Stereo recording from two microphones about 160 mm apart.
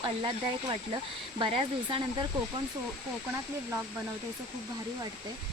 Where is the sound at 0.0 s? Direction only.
30° right (ahead or behind).